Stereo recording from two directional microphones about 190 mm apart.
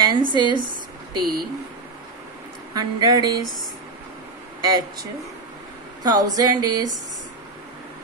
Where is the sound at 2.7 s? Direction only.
20° right (ahead or behind).